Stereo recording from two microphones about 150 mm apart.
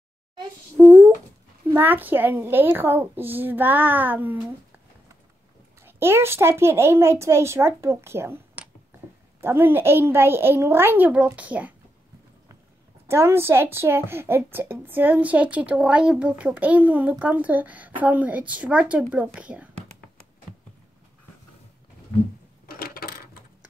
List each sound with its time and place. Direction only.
0.7 s humming: 15° right (ahead or behind)
1.7 s a woman's voice: 15° right (ahead or behind)
5.9 s a woman's voice: 15° right (ahead or behind)
13.1 s a woman's voice: 15° right (ahead or behind)
22.7 s coin: 85° left